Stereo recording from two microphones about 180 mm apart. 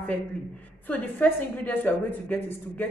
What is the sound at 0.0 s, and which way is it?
Speech, 5° left (ahead or behind).